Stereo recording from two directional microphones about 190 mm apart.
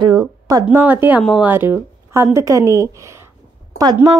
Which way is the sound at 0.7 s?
10° right (ahead or behind).